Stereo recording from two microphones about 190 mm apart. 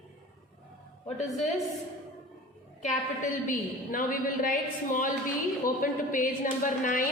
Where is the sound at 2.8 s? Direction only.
40° left (ahead or behind).